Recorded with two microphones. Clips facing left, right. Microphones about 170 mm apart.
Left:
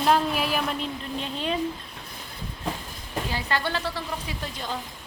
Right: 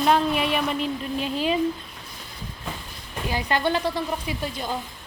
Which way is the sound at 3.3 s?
20° right (ahead or behind).